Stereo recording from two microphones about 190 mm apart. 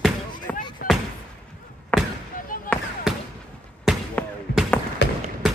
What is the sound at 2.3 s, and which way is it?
Fireworks, 45° left (ahead or behind).